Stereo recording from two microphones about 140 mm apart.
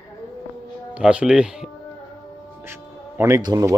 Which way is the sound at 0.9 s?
5° right (ahead or behind).